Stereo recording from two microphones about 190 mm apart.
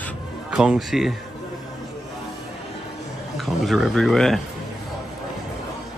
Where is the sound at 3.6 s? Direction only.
Centre (ahead or behind).